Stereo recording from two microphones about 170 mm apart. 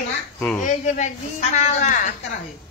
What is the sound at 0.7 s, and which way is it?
A man's voice, 45° left (ahead or behind).